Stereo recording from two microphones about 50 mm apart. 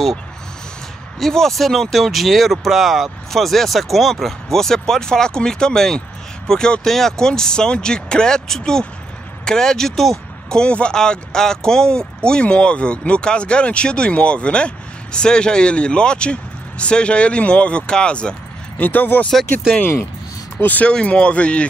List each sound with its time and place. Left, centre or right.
1.2 s speech: centre
10.5 s speech: centre
18.8 s speech: left
20.6 s speech: left